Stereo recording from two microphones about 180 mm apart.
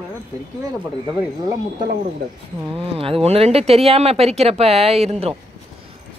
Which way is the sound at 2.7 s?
30° right (ahead or behind).